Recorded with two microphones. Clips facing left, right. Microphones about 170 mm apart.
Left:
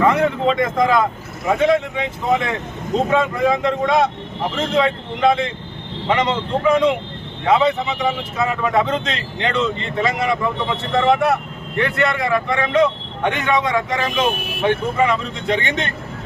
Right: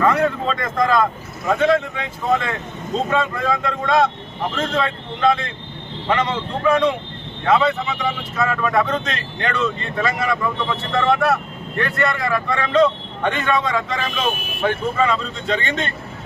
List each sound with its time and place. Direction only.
0.0 s speech: 15° left (ahead or behind)